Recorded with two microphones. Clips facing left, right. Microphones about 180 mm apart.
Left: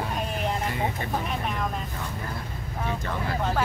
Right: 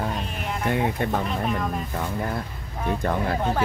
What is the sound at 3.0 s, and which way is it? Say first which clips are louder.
Speech: right 6 dB; 50° right (ahead or behind).